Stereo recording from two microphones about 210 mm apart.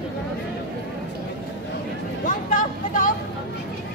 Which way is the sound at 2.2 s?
40° left (ahead or behind).